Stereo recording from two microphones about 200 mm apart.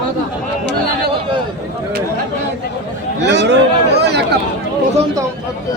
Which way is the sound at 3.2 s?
60° right (ahead or behind).